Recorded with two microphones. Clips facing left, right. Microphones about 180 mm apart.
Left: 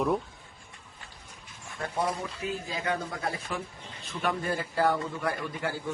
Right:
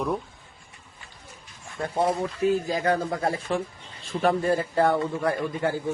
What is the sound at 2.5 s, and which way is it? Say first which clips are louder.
Speech: right 8 dB; 45° right (ahead or behind).